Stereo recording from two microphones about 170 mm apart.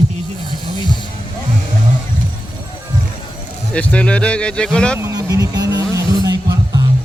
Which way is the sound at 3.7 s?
5° left (ahead or behind).